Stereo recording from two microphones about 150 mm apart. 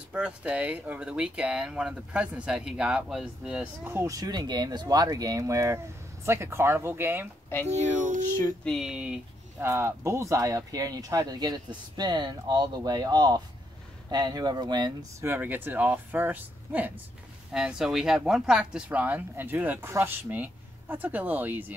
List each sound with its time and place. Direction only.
0.1 s speech: 10° right (ahead or behind)
7.6 s speech: 50° right (ahead or behind)
8.6 s speech: centre (ahead or behind)